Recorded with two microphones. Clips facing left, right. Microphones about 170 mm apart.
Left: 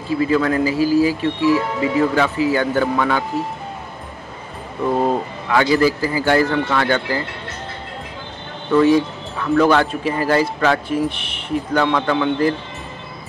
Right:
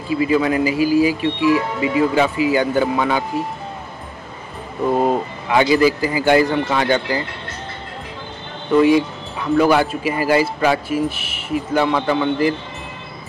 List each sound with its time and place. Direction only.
0.1 s speech: 15° right (ahead or behind)
4.9 s speech: 15° right (ahead or behind)
8.7 s speech: 15° right (ahead or behind)